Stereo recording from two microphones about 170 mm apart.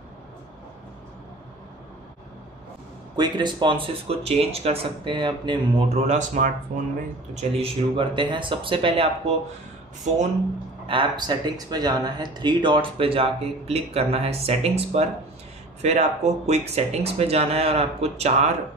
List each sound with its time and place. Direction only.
3.2 s speech: 25° right (ahead or behind); by 6.9 s 50° right (ahead or behind)
7.3 s speech: 35° right (ahead or behind)
10.1 s speech: 45° right (ahead or behind)
10.9 s speech: 25° right (ahead or behind)